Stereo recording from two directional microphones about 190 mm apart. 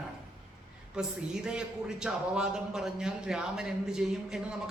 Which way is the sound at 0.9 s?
5° right (ahead or behind).